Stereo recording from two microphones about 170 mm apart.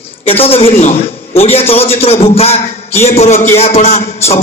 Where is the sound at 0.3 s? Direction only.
35° left (ahead or behind).